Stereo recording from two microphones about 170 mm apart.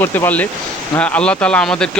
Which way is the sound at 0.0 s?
10° left (ahead or behind).